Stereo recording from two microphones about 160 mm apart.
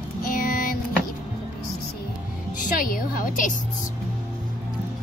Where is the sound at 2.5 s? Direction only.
55° left (ahead or behind).